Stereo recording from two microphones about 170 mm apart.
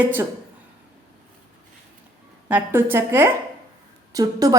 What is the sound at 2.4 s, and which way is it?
A woman's voice, 10° right (ahead or behind).